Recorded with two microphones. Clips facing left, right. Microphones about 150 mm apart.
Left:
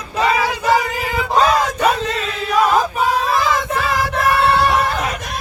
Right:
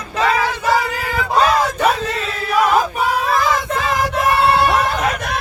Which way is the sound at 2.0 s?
10° right (ahead or behind).